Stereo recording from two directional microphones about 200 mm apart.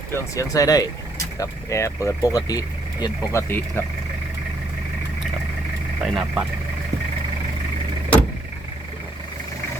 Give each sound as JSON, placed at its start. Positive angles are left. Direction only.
{"t": 0.1, "sound": "speech", "side_deg": 15}
{"t": 6.0, "sound": "speech", "side_deg": 0}